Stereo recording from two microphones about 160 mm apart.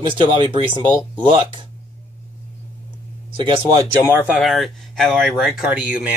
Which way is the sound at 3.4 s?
30° right (ahead or behind).